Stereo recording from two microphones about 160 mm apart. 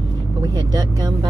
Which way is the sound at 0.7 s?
25° right (ahead or behind).